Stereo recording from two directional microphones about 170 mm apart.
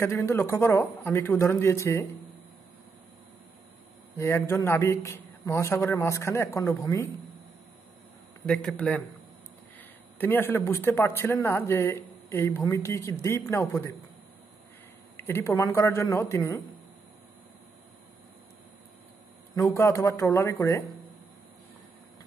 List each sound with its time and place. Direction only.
0.0 s speech: 15° left (ahead or behind)
4.2 s speech: 15° left (ahead or behind)
8.5 s speech: 5° left (ahead or behind)
15.1 s speech: 15° left (ahead or behind)
19.5 s speech: 20° left (ahead or behind)